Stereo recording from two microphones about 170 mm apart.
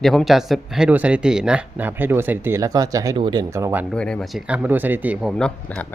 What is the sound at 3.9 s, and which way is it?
A man's voice, 5° left (ahead or behind).